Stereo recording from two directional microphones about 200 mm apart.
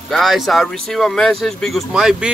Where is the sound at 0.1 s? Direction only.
Centre (ahead or behind).